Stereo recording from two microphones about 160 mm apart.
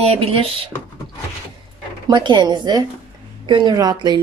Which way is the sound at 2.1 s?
30° right (ahead or behind).